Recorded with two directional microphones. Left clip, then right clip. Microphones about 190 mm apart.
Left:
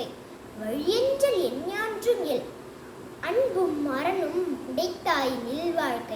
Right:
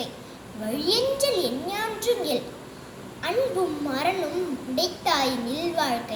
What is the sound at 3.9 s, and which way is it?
A child's voice, 10° left (ahead or behind).